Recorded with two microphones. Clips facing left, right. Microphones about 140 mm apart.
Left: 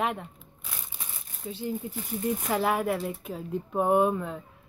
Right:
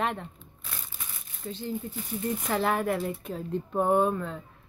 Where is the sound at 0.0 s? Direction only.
5° left (ahead or behind).